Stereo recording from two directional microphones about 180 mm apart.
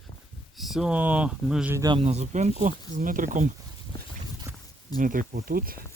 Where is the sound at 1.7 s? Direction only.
20° right (ahead or behind).